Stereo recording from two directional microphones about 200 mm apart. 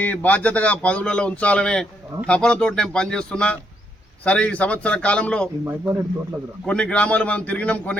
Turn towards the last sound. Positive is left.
turn(degrees=5)  # may be behind; listen again after turning